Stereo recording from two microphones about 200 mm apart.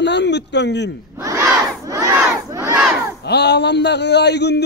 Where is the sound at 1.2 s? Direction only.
15° right (ahead or behind).